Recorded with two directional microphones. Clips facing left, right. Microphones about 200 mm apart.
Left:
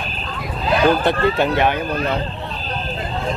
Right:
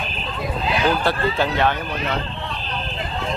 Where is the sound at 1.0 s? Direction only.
20° left (ahead or behind).